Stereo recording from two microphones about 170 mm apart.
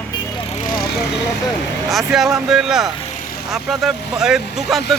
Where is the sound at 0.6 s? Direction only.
65° left (ahead or behind).